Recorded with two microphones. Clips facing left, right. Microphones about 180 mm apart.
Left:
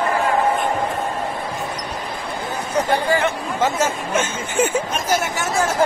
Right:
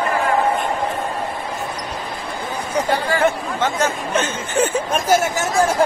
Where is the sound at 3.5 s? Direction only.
5° left (ahead or behind).